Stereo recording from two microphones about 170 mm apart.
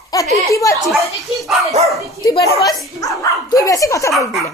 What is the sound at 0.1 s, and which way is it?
Speech, 20° left (ahead or behind).